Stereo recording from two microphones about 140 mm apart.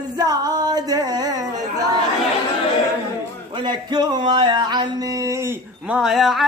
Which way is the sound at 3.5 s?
30° right (ahead or behind).